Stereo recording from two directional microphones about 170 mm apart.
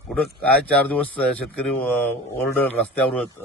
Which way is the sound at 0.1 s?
5° left (ahead or behind).